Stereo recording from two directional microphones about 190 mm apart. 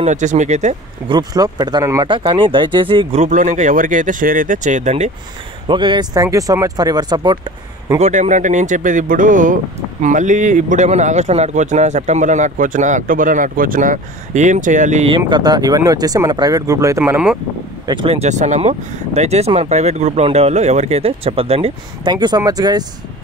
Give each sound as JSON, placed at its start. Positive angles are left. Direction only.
{"t": 0.0, "sound": "a man's voice", "side_deg": -40}
{"t": 1.0, "sound": "a man's voice", "side_deg": -20}
{"t": 5.7, "sound": "speech", "side_deg": -25}
{"t": 8.0, "sound": "a man's voice", "side_deg": -40}
{"t": 17.8, "sound": "a man's voice", "side_deg": -25}